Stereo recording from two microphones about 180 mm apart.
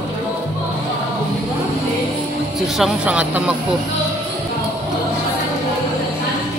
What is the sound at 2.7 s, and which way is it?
Music, 5° right (ahead or behind).